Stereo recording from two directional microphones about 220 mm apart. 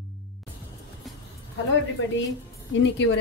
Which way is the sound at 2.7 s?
55° left (ahead or behind).